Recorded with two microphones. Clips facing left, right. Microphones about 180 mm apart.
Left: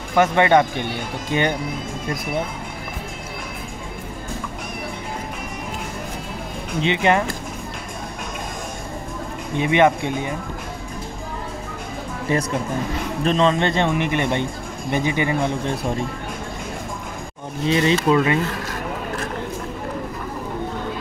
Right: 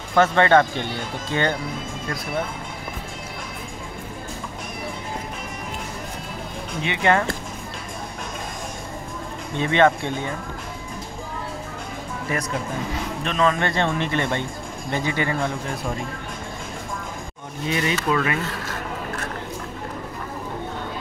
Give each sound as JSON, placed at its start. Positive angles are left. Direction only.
{"t": 0.1, "sound": "speech", "side_deg": 15}
{"t": 6.8, "sound": "speech", "side_deg": 20}
{"t": 9.6, "sound": "speech", "side_deg": 15}
{"t": 12.3, "sound": "speech", "side_deg": 30}
{"t": 17.6, "sound": "speech", "side_deg": 30}